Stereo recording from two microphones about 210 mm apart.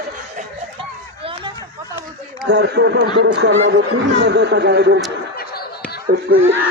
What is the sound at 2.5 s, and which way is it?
A man's voice, 55° right (ahead or behind).